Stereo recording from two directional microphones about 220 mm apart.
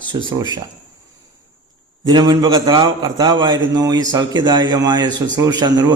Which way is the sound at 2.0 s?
20° right (ahead or behind).